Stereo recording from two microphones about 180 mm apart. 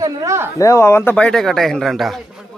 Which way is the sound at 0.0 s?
15° right (ahead or behind).